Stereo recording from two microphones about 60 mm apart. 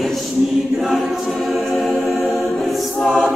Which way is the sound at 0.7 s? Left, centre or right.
Centre.